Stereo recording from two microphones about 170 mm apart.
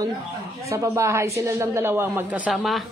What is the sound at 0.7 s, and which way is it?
A man's voice, 15° right (ahead or behind).